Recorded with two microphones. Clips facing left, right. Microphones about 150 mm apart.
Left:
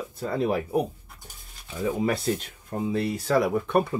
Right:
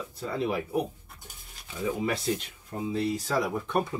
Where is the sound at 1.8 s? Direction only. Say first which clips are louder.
Left 4 dB; 45° left (ahead or behind).